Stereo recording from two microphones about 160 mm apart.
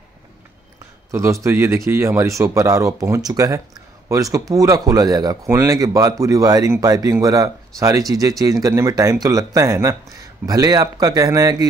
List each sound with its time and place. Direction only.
1.1 s a man's voice: 20° right (ahead or behind)